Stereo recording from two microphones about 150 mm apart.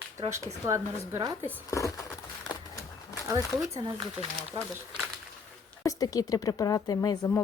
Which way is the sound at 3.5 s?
Centre (ahead or behind).